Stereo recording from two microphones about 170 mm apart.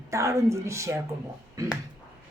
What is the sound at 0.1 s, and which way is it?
Speech, 20° right (ahead or behind).